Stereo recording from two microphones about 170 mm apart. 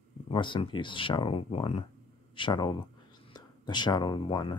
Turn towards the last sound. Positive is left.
turn(degrees=25)  # may be behind; listen again after turning